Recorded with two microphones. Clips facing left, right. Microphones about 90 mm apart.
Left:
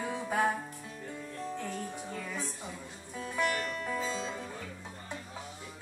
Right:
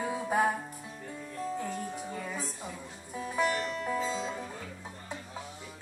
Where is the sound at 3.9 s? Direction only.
10° right (ahead or behind).